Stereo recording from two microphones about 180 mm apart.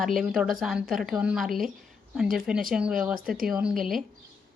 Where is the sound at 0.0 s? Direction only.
Centre (ahead or behind).